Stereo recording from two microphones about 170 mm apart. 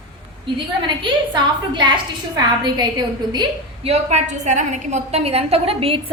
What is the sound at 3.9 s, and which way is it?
A woman's voice, 40° right (ahead or behind).